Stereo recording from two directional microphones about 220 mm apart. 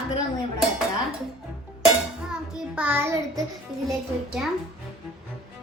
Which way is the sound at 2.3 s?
5° right (ahead or behind).